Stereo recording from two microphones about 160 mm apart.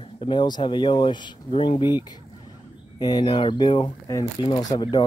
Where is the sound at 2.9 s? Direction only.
25° left (ahead or behind).